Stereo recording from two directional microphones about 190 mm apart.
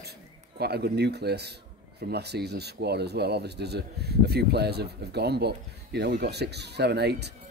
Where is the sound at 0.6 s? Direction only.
60° right (ahead or behind).